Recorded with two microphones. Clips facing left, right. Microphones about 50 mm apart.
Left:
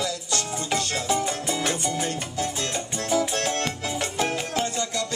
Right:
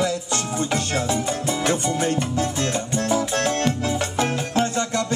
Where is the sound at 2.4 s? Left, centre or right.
Right.